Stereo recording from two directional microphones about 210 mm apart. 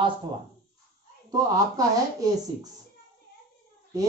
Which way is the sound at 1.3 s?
15° right (ahead or behind).